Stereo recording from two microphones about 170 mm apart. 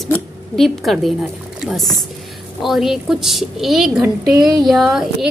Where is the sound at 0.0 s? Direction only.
Centre (ahead or behind).